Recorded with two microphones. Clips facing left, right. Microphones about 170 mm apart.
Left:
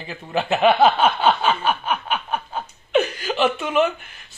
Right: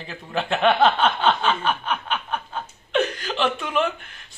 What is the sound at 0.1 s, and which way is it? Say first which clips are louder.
Snicker: left 3 dB; 5° left (ahead or behind).